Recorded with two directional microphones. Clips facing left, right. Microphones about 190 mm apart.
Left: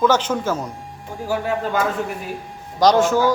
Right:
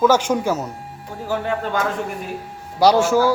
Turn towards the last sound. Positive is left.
turn(degrees=-10)  # may be behind; listen again after turning